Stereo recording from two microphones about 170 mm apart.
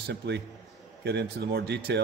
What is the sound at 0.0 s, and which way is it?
Speech, 80° right.